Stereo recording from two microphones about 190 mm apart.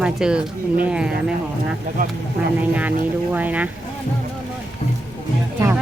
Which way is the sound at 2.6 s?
10° right (ahead or behind).